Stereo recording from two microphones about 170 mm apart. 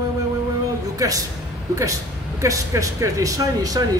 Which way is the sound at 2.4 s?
20° right (ahead or behind).